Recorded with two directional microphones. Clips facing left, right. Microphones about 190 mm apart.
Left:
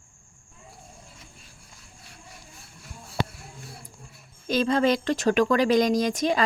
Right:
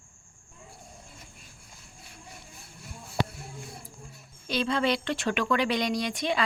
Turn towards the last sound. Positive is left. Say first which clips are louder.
# left 5 dB
turn(degrees=45)  # may be behind; listen again after turning